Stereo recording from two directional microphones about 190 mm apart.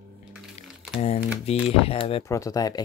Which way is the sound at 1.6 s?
30° left (ahead or behind).